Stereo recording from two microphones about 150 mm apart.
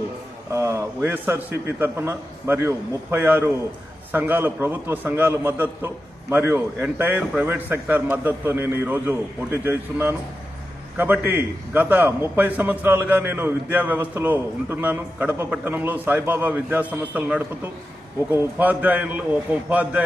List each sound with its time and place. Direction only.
0.5 s a man's voice: 20° right (ahead or behind)